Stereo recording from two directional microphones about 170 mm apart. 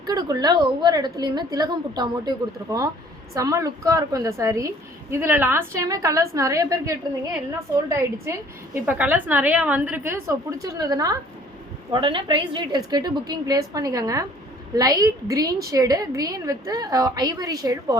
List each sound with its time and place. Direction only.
0.0 s a woman's voice: 20° right (ahead or behind)